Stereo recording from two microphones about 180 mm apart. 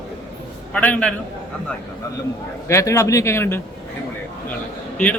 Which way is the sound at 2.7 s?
15° left (ahead or behind).